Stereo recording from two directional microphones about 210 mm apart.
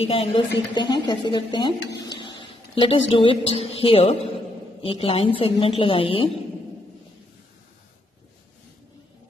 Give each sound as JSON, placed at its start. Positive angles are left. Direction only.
{"t": 0.0, "sound": "speech", "side_deg": 25}
{"t": 2.0, "sound": "a sound", "side_deg": 20}
{"t": 3.1, "sound": "speech", "side_deg": 25}